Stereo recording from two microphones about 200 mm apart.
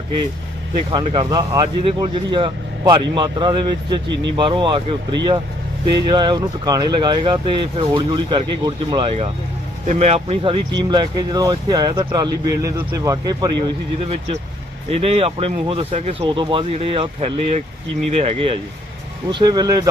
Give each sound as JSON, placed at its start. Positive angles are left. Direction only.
{"t": 0.9, "sound": "speech", "side_deg": -25}
{"t": 14.9, "sound": "speech", "side_deg": -30}